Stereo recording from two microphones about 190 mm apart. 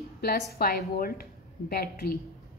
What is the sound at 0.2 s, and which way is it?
A woman's voice, 55° left (ahead or behind).